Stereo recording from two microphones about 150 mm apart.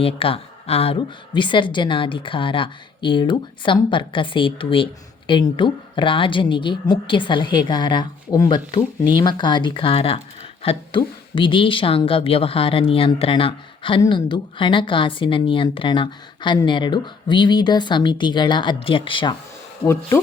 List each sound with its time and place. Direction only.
0.0 s a woman's voice: 40° left (ahead or behind)
19.8 s speech: 15° left (ahead or behind)